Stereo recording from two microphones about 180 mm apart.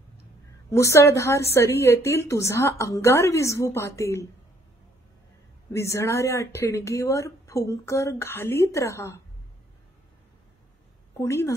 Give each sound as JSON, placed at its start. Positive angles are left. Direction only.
{"t": 0.7, "sound": "speech", "side_deg": 15}
{"t": 5.7, "sound": "speech", "side_deg": 15}
{"t": 11.1, "sound": "speech", "side_deg": 15}